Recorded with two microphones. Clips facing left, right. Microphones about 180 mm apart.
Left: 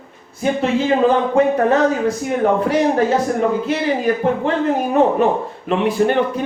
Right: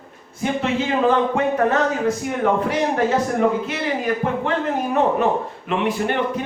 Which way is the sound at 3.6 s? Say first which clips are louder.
Left 5 dB; 30° left (ahead or behind).